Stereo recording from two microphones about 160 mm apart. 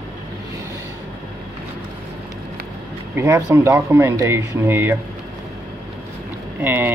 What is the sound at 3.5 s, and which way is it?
Speech, 15° right (ahead or behind).